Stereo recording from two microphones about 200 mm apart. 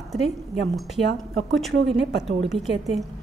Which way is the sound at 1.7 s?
65° right (ahead or behind).